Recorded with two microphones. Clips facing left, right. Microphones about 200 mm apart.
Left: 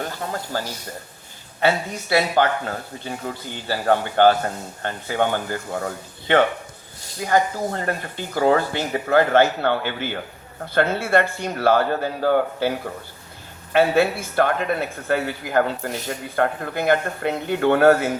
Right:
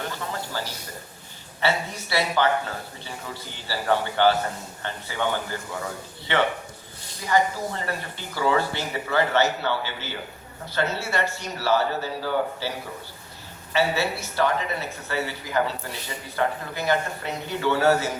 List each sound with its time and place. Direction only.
0.0 s a sound: 45° left (ahead or behind)
1.6 s speech: 50° left (ahead or behind)
13.7 s speech: 55° left (ahead or behind)